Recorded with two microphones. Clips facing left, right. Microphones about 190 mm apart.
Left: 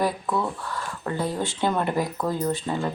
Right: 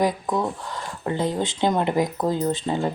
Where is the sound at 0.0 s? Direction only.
20° right (ahead or behind).